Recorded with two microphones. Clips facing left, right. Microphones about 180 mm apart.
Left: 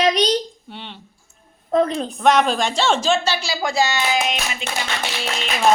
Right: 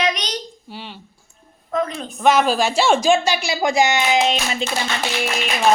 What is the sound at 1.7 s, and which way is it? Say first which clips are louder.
Child singing: left 5 dB; 30° left (ahead or behind).